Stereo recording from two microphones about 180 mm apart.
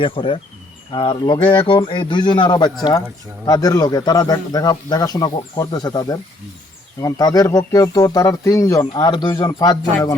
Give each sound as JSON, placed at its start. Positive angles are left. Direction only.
{"t": 0.0, "sound": "speech", "side_deg": 30}